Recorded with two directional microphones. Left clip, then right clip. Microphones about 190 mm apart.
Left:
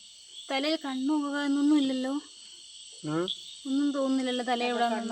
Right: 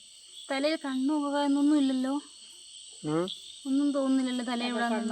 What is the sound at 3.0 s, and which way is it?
Speech, 25° right (ahead or behind).